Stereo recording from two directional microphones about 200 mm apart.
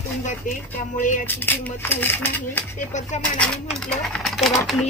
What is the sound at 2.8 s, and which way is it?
Speech, 35° left (ahead or behind).